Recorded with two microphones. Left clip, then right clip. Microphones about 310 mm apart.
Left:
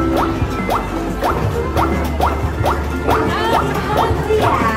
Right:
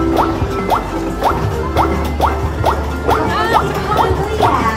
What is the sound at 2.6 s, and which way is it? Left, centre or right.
Music, centre.